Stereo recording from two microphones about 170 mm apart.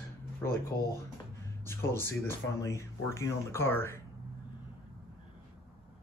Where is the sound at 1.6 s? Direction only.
15° left (ahead or behind).